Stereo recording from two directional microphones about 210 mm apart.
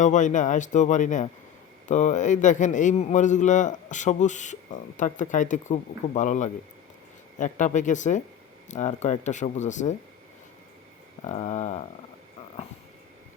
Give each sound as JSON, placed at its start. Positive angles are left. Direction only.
{"t": 0.0, "sound": "a man's voice", "side_deg": 35}
{"t": 11.2, "sound": "a man's voice", "side_deg": 30}